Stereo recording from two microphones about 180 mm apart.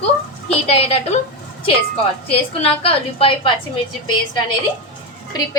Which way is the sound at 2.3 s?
30° left (ahead or behind).